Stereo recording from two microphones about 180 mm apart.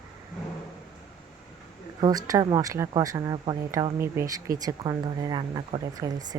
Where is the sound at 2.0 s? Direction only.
20° right (ahead or behind).